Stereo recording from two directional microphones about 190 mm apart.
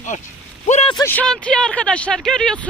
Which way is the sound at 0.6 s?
35° left (ahead or behind).